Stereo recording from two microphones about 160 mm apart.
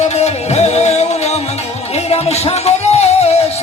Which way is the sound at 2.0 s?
40° left (ahead or behind).